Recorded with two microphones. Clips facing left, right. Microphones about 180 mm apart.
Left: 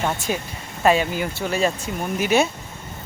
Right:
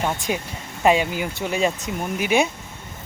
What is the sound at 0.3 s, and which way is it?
Speech, 15° right (ahead or behind).